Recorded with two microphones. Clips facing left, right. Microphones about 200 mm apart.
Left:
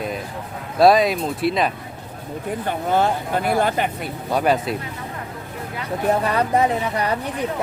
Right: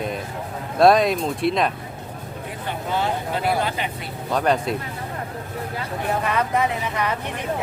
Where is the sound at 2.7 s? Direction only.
50° left (ahead or behind).